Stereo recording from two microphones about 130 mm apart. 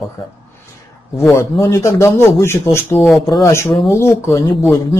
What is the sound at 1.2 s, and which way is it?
Speech, 20° left (ahead or behind).